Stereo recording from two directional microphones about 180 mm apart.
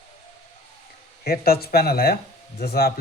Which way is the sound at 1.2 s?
60° left (ahead or behind).